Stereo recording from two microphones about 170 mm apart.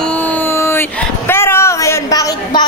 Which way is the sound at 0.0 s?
10° left (ahead or behind).